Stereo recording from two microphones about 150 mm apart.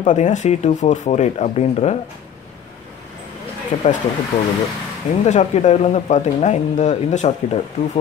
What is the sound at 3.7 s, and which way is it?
Speech, 40° left (ahead or behind).